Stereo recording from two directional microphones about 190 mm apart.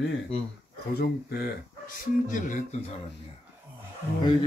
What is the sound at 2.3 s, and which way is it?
Speech, 40° left (ahead or behind).